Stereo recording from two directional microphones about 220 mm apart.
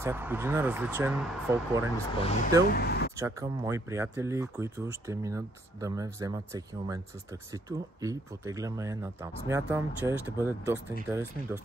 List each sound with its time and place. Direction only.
0.0 s speech: 10° right (ahead or behind)
2.7 s speech: 50° left (ahead or behind)
3.2 s speech: 15° right (ahead or behind)